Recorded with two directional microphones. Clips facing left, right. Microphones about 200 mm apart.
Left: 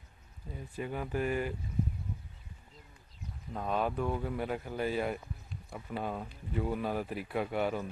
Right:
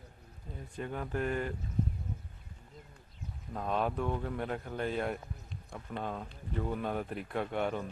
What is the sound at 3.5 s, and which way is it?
Speech, centre (ahead or behind).